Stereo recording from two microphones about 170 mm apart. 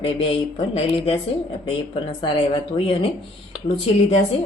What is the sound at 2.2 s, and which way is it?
Speech, 30° left (ahead or behind).